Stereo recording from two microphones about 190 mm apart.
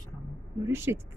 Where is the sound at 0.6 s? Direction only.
10° right (ahead or behind).